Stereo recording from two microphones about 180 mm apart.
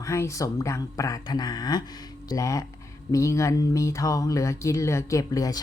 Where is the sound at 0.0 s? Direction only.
15° left (ahead or behind).